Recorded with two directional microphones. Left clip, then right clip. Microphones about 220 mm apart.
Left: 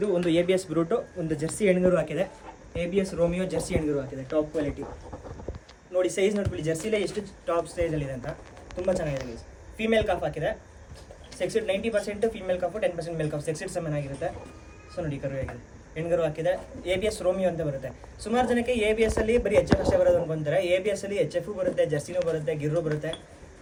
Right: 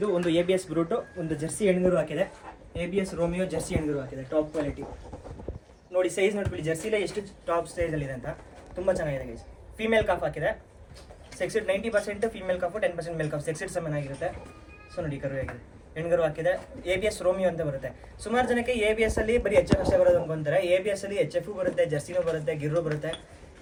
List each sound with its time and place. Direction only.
0.0 s a man's voice: 5° left (ahead or behind)
5.9 s a man's voice: centre (ahead or behind)